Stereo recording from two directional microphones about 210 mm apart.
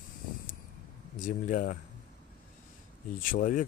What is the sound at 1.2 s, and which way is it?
Speech, 40° left (ahead or behind).